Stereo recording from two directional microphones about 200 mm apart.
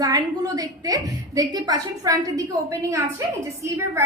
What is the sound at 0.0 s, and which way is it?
A woman's voice, 20° right (ahead or behind).